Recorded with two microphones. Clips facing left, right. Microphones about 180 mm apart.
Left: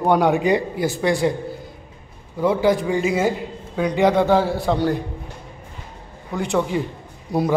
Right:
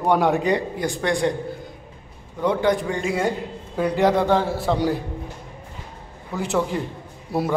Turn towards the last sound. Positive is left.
turn(degrees=-5)  # may be behind; listen again after turning